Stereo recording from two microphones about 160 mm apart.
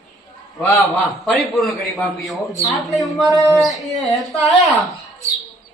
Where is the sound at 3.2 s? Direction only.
20° right (ahead or behind).